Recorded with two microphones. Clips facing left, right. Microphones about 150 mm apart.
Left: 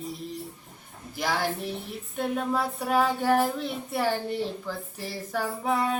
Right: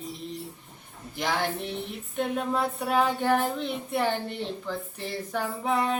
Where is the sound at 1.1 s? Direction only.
5° left (ahead or behind).